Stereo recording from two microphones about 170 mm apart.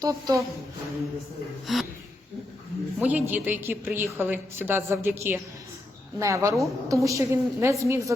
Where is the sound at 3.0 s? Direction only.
10° right (ahead or behind).